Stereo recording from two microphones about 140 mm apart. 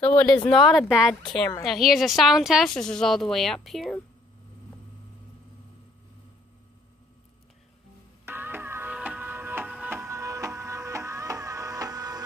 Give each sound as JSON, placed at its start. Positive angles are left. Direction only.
{"t": 0.1, "sound": "speech", "side_deg": 10}
{"t": 0.5, "sound": "speech", "side_deg": 0}
{"t": 8.3, "sound": "music", "side_deg": -15}